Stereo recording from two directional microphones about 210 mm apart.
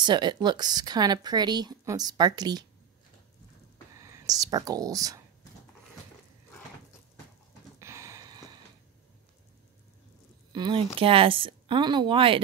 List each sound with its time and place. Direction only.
0.0 s a woman's voice: 20° right (ahead or behind)
4.0 s speech: 15° right (ahead or behind)
7.8 s a sound: 15° right (ahead or behind)
10.5 s a woman's voice: 20° right (ahead or behind)